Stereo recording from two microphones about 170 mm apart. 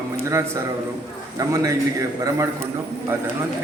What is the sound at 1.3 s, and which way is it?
Speech, 20° right (ahead or behind).